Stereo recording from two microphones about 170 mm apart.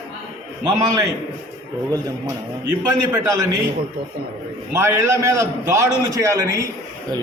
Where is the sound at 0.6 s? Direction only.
20° right (ahead or behind).